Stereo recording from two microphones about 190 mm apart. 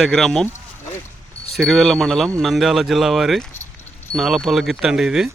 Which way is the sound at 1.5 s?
Centre (ahead or behind).